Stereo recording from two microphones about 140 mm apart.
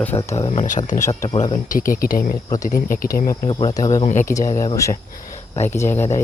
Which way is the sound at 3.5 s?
30° left (ahead or behind).